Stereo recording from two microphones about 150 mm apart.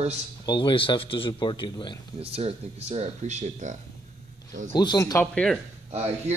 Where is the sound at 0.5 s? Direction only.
35° left (ahead or behind).